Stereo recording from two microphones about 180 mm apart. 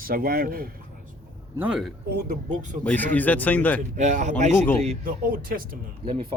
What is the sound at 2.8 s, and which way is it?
Speech, 10° left (ahead or behind).